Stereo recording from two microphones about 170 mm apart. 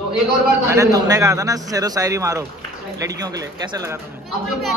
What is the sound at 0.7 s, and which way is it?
A man's voice, 20° right (ahead or behind).